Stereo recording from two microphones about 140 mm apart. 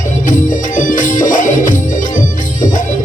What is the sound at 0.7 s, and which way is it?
Music, 65° left (ahead or behind).